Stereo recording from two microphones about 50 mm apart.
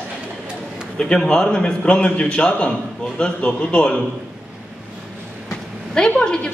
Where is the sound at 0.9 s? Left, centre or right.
Centre.